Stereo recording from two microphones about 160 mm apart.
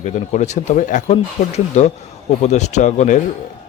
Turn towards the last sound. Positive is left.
turn(degrees=50)  # may be behind; listen again after turning